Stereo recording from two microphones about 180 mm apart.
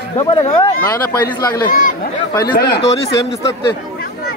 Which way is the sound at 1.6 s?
50° left (ahead or behind).